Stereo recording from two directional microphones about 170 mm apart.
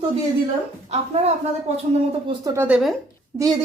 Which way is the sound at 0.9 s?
40° right (ahead or behind).